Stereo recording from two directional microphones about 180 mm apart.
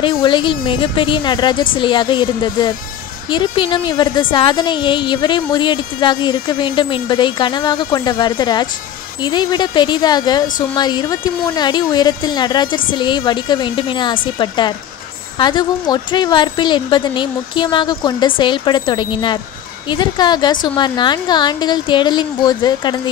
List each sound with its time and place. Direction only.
0.0 s a woman's voice: 25° left (ahead or behind)